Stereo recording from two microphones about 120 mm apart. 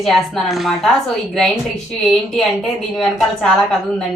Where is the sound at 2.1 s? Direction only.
Centre (ahead or behind).